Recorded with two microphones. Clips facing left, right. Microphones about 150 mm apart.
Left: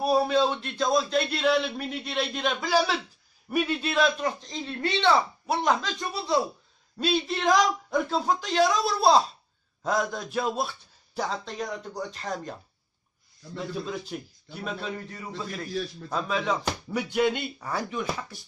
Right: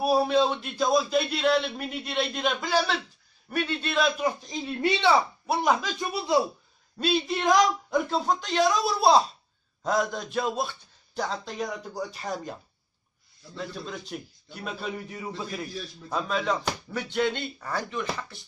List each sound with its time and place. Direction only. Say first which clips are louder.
0.0 s a man's voice: even; centre (ahead or behind)
5.9 s speech: right 2 dB; 15° right (ahead or behind)
7.0 s a man's voice: even; centre (ahead or behind)
13.8 s a man's voice: left 3 dB; centre (ahead or behind); by 15.7 s 20° right (ahead or behind)
15.9 s a man's voice: even; centre (ahead or behind)